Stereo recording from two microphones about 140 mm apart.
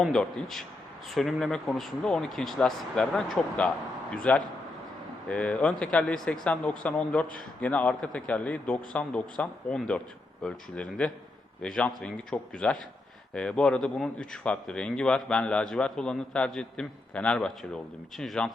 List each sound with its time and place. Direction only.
0.0 s a man's voice: 5° left (ahead or behind)